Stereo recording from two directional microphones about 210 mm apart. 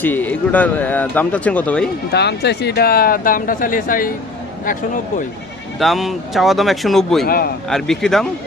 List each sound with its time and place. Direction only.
0.0 s speech: 10° left (ahead or behind)
2.1 s speech: 50° left (ahead or behind)
5.8 s speech: centre (ahead or behind)